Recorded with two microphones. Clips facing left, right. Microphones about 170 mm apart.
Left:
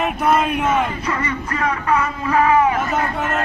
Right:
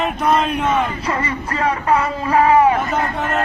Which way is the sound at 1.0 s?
30° right (ahead or behind).